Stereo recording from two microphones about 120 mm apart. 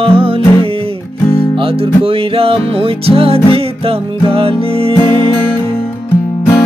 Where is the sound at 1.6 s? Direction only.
50° right (ahead or behind).